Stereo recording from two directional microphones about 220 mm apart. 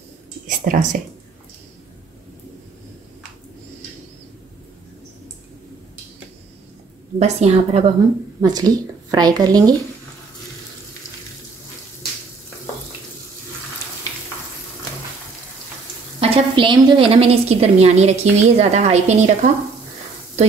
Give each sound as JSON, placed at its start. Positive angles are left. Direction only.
{"t": 0.7, "sound": "speech", "side_deg": -40}
{"t": 7.2, "sound": "a woman's voice", "side_deg": -30}
{"t": 8.4, "sound": "speech", "side_deg": -15}
{"t": 16.2, "sound": "a woman's voice", "side_deg": -25}